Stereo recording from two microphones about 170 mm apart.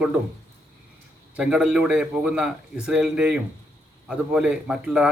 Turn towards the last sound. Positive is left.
turn(degrees=-5)  # may be behind; listen again after turning